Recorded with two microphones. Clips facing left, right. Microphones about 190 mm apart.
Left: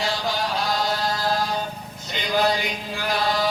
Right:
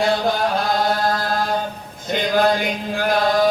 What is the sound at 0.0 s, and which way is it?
Chant, 55° right (ahead or behind).